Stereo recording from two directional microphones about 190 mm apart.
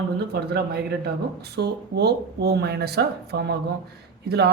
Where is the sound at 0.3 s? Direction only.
55° right (ahead or behind).